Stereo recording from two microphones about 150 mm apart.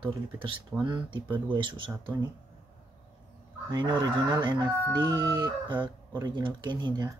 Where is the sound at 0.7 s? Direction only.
15° right (ahead or behind).